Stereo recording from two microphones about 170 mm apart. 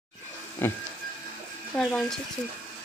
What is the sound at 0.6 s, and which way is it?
Speech, 15° left (ahead or behind).